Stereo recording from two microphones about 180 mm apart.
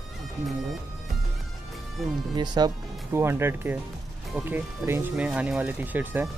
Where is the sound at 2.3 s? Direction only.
20° right (ahead or behind).